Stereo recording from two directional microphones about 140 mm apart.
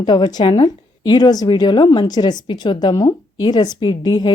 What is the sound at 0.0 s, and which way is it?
A woman's voice, 30° left (ahead or behind).